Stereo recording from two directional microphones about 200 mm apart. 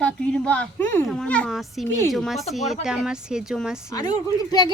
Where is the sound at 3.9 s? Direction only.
20° left (ahead or behind).